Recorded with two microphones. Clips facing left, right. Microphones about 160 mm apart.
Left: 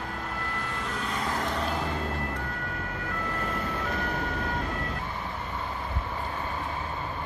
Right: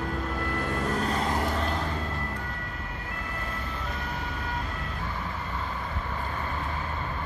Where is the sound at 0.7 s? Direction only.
45° right (ahead or behind).